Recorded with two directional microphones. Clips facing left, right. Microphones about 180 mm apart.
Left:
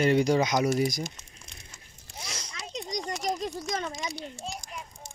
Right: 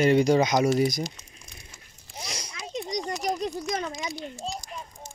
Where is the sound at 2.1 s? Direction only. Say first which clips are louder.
Right 3 dB; 15° right (ahead or behind).